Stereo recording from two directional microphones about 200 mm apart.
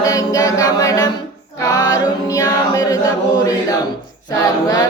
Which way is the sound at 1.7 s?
20° left (ahead or behind).